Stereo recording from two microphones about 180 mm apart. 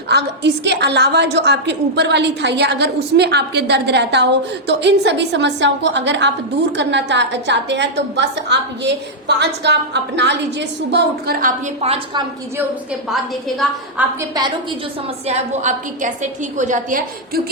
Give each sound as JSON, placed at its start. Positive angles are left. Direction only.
{"t": 0.1, "sound": "a woman's voice", "side_deg": -70}
{"t": 11.8, "sound": "a woman's voice", "side_deg": -35}
{"t": 13.6, "sound": "a woman's voice", "side_deg": -10}
{"t": 15.3, "sound": "a woman's voice", "side_deg": -40}